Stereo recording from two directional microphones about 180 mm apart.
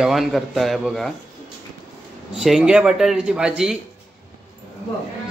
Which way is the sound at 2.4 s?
5° right (ahead or behind).